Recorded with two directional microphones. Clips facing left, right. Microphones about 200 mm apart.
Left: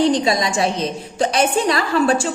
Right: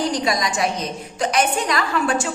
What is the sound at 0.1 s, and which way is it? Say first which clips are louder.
A woman's voice: left 4 dB; 25° left (ahead or behind).